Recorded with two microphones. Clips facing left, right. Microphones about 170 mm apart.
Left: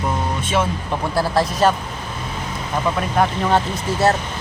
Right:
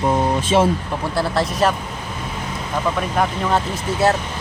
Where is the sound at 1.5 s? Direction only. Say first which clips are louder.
Left 2 dB; 30° left (ahead or behind).